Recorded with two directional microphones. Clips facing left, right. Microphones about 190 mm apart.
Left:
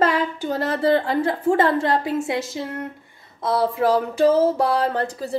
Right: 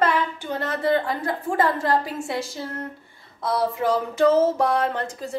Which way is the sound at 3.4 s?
25° left (ahead or behind).